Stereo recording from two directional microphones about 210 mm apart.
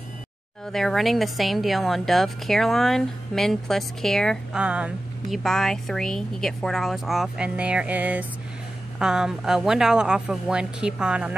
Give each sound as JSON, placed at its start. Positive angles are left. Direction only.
{"t": 0.7, "sound": "a woman's voice", "side_deg": 0}